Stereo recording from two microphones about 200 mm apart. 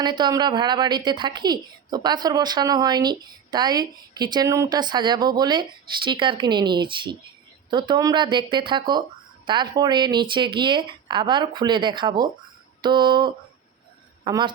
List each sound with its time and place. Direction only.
0.0 s a woman's voice: 20° right (ahead or behind)